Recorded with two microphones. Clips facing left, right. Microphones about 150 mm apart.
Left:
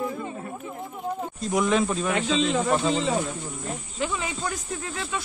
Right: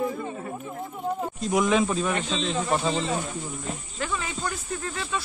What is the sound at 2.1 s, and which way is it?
Speech, 90° left.